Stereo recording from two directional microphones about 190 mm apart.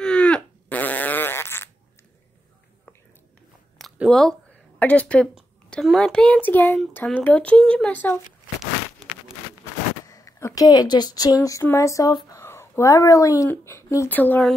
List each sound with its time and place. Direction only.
0.0 s fart: 5° left (ahead or behind)
3.7 s speech: centre (ahead or behind)
10.0 s speech: 15° left (ahead or behind)